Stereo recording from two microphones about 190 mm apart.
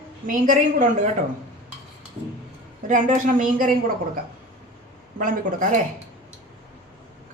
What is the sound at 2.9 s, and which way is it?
Speech, 40° right (ahead or behind).